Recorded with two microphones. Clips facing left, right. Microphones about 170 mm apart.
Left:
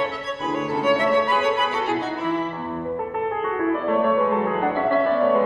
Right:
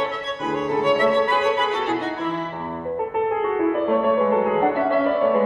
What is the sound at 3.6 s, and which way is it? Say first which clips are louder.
Music: even; 20° right (ahead or behind).